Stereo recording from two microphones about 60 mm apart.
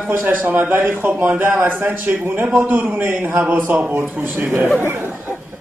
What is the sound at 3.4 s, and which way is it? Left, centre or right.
A man's voice, right.